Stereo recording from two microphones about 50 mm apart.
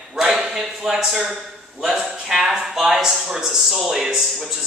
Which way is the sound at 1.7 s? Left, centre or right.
Centre.